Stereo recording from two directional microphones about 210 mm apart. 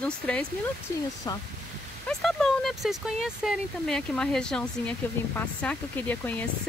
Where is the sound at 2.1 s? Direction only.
Centre (ahead or behind).